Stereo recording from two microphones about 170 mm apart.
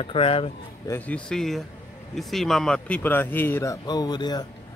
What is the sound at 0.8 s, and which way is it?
A man's voice, 10° left (ahead or behind).